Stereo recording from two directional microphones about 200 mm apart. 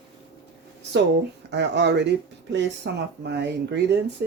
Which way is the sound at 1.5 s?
60° right (ahead or behind).